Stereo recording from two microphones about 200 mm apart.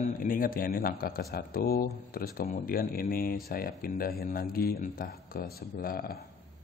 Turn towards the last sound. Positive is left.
turn(degrees=50)  # may be behind; listen again after turning